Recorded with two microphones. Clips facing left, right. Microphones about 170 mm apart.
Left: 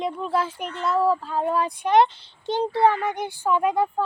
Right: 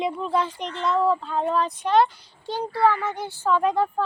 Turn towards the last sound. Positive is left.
turn(degrees=10)  # may be behind; listen again after turning